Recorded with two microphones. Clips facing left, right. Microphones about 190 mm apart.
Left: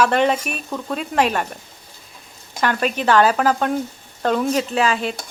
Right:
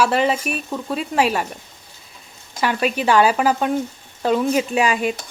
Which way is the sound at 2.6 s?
5° right (ahead or behind).